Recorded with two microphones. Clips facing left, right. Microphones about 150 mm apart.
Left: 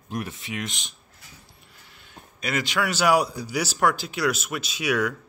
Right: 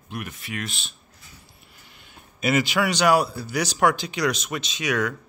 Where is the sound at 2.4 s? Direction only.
5° right (ahead or behind).